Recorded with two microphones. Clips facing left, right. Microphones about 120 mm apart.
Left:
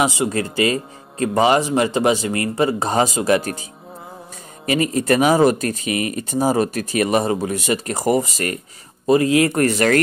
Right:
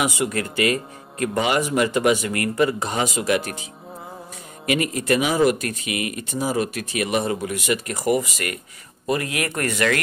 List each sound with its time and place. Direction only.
0.0 s speech: 30° left (ahead or behind)
4.6 s speech: 35° left (ahead or behind)